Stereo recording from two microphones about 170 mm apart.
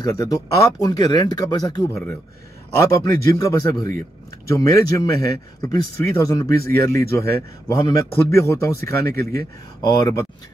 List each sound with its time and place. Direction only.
0.0 s speech: 20° left (ahead or behind)